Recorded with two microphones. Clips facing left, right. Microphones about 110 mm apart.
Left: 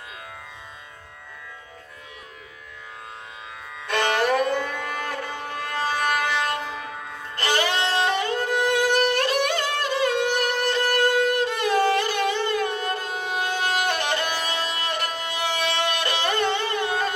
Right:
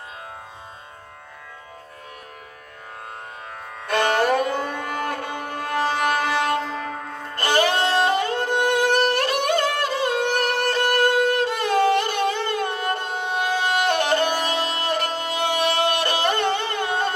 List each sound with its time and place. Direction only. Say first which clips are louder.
3.7 s music: right 3 dB; 45° right (ahead or behind)